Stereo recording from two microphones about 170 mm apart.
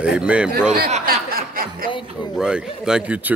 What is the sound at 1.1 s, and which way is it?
Speech, 60° right (ahead or behind).